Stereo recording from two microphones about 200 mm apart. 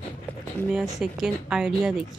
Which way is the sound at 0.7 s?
Centre (ahead or behind).